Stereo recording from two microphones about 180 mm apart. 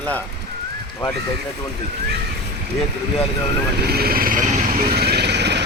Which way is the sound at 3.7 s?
60° right (ahead or behind).